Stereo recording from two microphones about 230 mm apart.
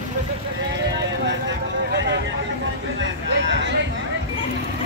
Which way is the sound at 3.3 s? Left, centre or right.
Right.